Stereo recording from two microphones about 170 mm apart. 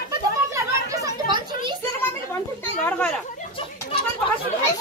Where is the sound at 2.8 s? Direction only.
10° left (ahead or behind).